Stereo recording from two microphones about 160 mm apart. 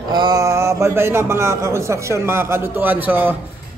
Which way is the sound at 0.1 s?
25° right (ahead or behind).